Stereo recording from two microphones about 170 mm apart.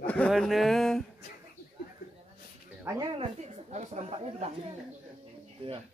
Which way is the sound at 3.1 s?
40° right (ahead or behind).